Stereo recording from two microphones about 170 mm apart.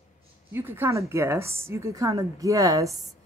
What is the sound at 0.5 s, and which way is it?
Speech, 15° right (ahead or behind).